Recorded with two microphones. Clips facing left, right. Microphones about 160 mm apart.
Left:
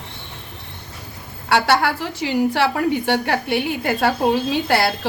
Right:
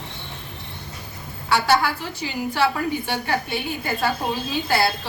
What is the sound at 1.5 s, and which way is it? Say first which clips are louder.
A woman's voice: left 2 dB; 75° left (ahead or behind).